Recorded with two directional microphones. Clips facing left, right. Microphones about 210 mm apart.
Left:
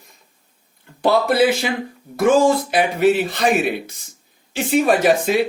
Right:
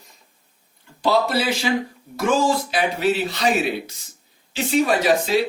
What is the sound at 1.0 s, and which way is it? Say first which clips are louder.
Speech: left 4 dB; 55° left (ahead or behind).